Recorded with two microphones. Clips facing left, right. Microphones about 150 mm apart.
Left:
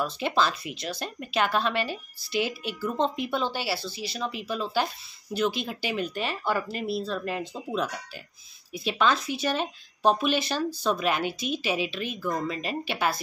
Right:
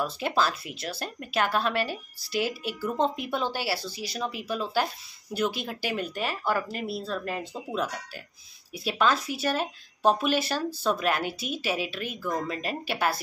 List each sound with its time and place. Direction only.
0.0 s speech: 5° right (ahead or behind)